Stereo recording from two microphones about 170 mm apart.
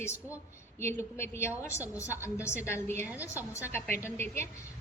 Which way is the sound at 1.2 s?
15° left (ahead or behind).